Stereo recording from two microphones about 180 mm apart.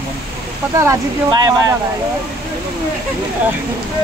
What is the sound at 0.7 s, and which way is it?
Speech, 20° right (ahead or behind).